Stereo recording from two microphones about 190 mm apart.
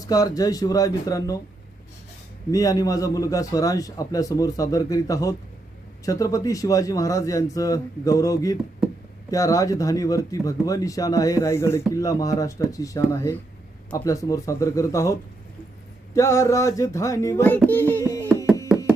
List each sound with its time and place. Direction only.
0.1 s speech: 20° left (ahead or behind)
2.5 s a man's voice: 20° left (ahead or behind)
18.7 s music: 5° right (ahead or behind)